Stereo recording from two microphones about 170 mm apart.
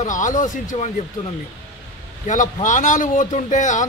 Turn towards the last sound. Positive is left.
turn(degrees=45)  # may be behind; listen again after turning